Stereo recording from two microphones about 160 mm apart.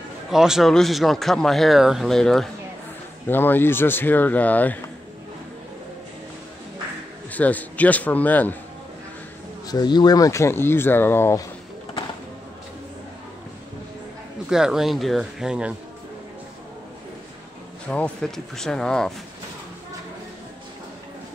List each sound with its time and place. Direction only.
0.3 s speech: 5° right (ahead or behind)
7.2 s speech: 10° left (ahead or behind)
9.7 s speech: 25° left (ahead or behind)
14.5 s speech: 5° right (ahead or behind)
17.8 s speech: 10° left (ahead or behind)